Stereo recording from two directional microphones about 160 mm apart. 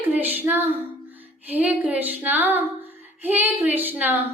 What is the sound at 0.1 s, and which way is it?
Music, 10° right (ahead or behind).